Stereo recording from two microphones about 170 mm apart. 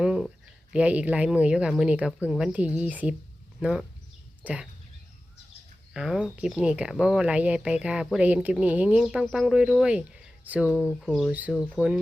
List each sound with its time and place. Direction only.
0.0 s speech: 5° right (ahead or behind)
5.9 s speech: 5° right (ahead or behind)